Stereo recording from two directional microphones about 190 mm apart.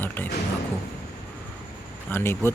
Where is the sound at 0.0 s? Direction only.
10° left (ahead or behind).